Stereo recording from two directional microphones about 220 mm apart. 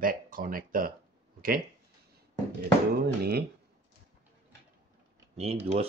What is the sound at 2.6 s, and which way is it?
Speech, 45° right (ahead or behind).